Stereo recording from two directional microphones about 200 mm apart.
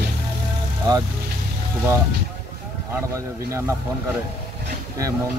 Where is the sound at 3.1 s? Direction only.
15° right (ahead or behind).